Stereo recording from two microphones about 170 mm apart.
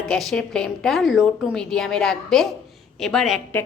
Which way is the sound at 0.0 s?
Centre (ahead or behind).